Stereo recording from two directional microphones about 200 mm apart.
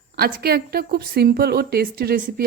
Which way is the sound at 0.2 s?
50° right (ahead or behind).